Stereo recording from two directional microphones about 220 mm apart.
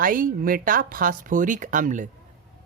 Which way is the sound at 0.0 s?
40° right (ahead or behind).